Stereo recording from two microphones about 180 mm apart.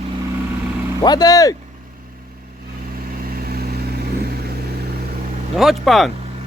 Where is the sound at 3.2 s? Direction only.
55° right (ahead or behind).